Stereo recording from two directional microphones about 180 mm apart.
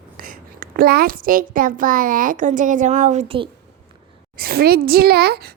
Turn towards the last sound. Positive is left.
turn(degrees=-60)  # may be behind; listen again after turning